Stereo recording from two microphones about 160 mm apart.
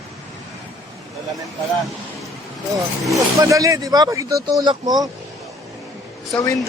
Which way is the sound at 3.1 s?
20° right (ahead or behind).